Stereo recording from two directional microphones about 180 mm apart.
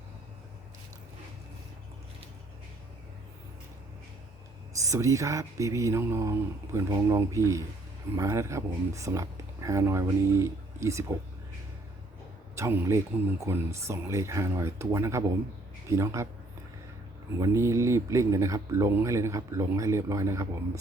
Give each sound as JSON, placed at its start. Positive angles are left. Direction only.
{"t": 4.8, "sound": "speech", "side_deg": -15}
{"t": 12.5, "sound": "speech", "side_deg": -15}
{"t": 17.4, "sound": "speech", "side_deg": -15}